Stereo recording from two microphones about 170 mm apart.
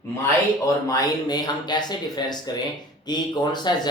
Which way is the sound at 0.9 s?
25° left (ahead or behind).